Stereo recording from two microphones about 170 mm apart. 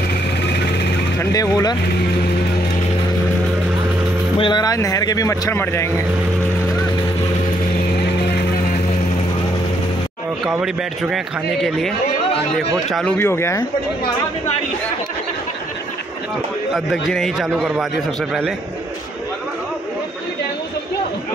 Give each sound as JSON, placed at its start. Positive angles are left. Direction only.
{"t": 1.3, "sound": "speech", "side_deg": 20}
{"t": 4.4, "sound": "speech", "side_deg": 25}
{"t": 10.4, "sound": "a man's voice", "side_deg": -5}
{"t": 13.2, "sound": "speech", "side_deg": 15}
{"t": 16.7, "sound": "a man's voice", "side_deg": 0}